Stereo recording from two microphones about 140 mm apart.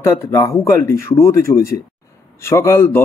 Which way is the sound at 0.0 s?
20° left (ahead or behind).